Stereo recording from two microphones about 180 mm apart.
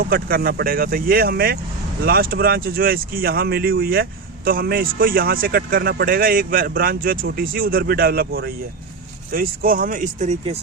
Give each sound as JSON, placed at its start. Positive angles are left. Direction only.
{"t": 0.0, "sound": "speech", "side_deg": -60}